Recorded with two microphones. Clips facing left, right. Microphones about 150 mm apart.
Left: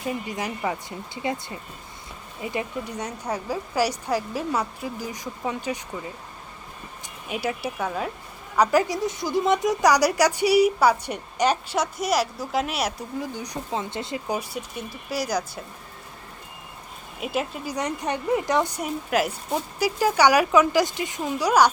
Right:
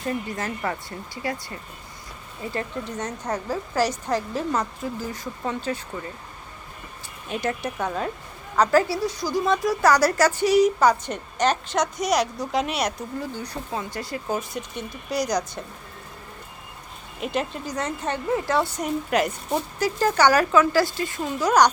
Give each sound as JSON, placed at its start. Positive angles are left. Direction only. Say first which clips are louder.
{"t": 0.0, "sound": "a woman's voice", "louder": "right 1 dB", "side_deg": 10}
{"t": 7.3, "sound": "a woman's voice", "louder": "right 1 dB", "side_deg": 10}
{"t": 13.3, "sound": "speech", "louder": "left 1 dB", "side_deg": 15}
{"t": 14.3, "sound": "speech", "louder": "right 1 dB", "side_deg": 5}
{"t": 17.2, "sound": "a woman's voice", "louder": "right 1 dB", "side_deg": 5}